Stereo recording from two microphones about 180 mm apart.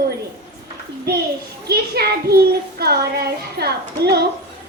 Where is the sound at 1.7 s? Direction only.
60° right (ahead or behind).